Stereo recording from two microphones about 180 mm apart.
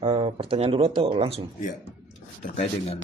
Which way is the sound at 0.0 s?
35° right (ahead or behind).